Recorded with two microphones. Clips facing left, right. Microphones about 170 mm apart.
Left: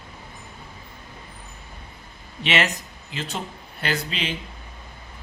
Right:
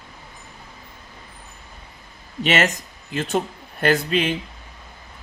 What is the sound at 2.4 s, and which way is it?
Speech, 45° right (ahead or behind).